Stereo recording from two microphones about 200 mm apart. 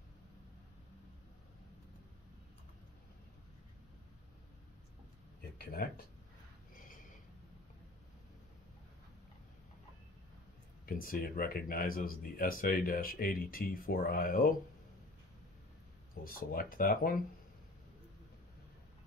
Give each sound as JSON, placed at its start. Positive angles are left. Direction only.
{"t": 5.6, "sound": "speech", "side_deg": 50}
{"t": 6.7, "sound": "a sound", "side_deg": 45}
{"t": 10.9, "sound": "speech", "side_deg": 45}
{"t": 16.3, "sound": "speech", "side_deg": 45}